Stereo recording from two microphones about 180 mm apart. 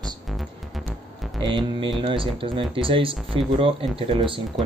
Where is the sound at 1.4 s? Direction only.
25° right (ahead or behind).